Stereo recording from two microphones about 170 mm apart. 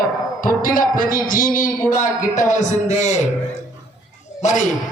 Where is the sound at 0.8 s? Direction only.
55° left (ahead or behind).